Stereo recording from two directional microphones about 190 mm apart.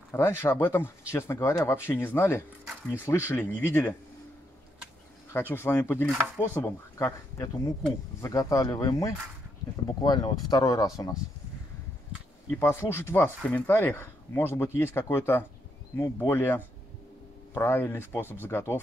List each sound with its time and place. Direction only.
0.1 s speech: 15° left (ahead or behind)
5.3 s speech: 10° left (ahead or behind)
12.4 s speech: 15° left (ahead or behind)